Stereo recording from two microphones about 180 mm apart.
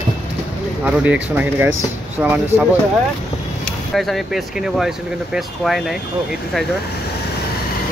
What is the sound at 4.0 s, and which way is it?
Speech, centre (ahead or behind).